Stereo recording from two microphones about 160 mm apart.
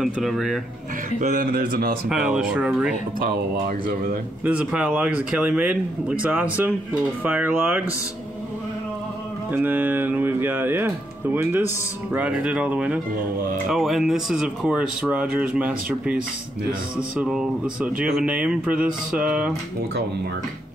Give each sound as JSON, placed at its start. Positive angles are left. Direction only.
{"t": 0.0, "sound": "speech", "side_deg": 0}
{"t": 1.2, "sound": "speech", "side_deg": -60}
{"t": 2.0, "sound": "speech", "side_deg": -5}
{"t": 3.2, "sound": "speech", "side_deg": -65}
{"t": 4.5, "sound": "speech", "side_deg": -5}
{"t": 9.5, "sound": "speech", "side_deg": -10}
{"t": 17.2, "sound": "speech", "side_deg": -5}